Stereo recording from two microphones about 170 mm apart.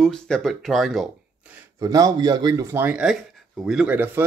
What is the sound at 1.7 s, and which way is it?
Speech, 20° right (ahead or behind).